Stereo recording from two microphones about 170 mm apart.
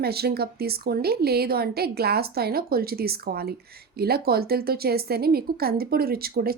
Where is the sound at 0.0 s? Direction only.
70° right (ahead or behind).